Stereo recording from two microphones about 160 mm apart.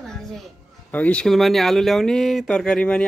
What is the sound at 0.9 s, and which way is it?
Speech, 10° left (ahead or behind).